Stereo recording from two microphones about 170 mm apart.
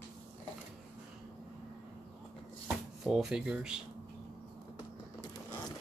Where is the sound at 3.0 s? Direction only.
5° right (ahead or behind).